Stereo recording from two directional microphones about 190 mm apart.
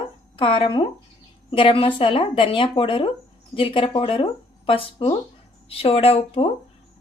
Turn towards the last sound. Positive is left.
turn(degrees=30)  # may be behind; listen again after turning